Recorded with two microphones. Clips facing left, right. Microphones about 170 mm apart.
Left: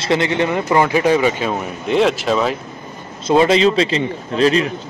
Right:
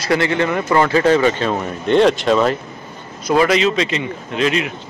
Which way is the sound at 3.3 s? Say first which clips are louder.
Left 2 dB; 25° left (ahead or behind).